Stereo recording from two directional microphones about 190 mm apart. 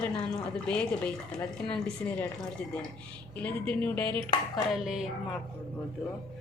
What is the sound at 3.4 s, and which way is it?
A woman's voice, 5° left (ahead or behind).